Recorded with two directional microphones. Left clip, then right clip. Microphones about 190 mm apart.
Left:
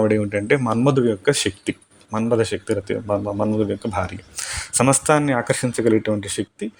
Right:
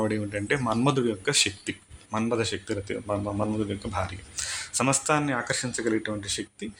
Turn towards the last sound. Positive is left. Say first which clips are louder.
# left 6 dB
turn(degrees=30)  # may be behind; listen again after turning